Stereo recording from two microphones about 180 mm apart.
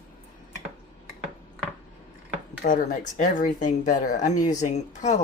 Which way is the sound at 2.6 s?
50° left (ahead or behind).